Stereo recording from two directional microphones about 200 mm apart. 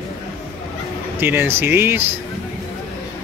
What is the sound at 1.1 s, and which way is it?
Speech, 10° right (ahead or behind).